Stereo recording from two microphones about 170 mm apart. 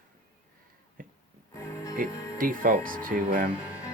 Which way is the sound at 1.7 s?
20° left (ahead or behind).